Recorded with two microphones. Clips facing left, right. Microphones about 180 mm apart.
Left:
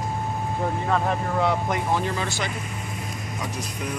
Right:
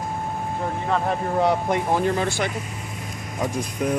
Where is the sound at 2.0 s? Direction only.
50° right (ahead or behind).